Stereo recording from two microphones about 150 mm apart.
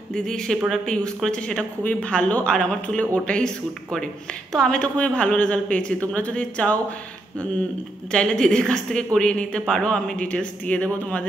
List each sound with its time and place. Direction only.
0.1 s speech: 5° left (ahead or behind)
8.1 s speech: 5° left (ahead or behind)